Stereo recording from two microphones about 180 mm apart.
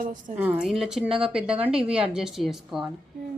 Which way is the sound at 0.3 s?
10° right (ahead or behind).